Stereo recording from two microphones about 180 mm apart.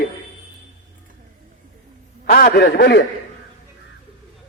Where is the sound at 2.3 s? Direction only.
55° left (ahead or behind).